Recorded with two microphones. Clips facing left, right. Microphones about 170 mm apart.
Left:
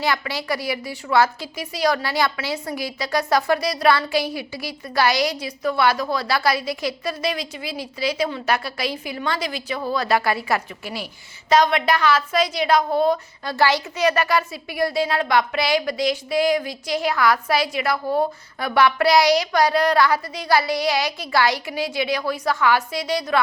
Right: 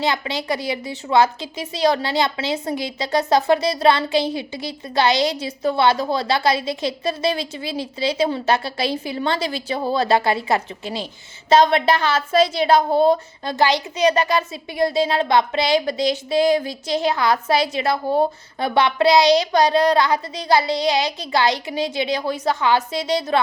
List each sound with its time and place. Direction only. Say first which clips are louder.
0.0 s a woman's voice: right 2 dB; 20° right (ahead or behind)